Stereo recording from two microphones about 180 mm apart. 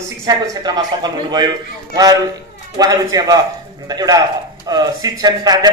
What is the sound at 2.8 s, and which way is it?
A man's voice, 20° right (ahead or behind).